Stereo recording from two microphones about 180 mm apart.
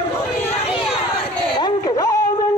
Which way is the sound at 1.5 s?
25° left (ahead or behind).